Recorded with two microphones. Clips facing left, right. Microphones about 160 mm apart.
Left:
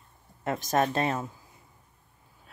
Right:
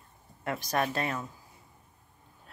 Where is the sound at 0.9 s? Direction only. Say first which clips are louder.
Left 5 dB; 25° left (ahead or behind).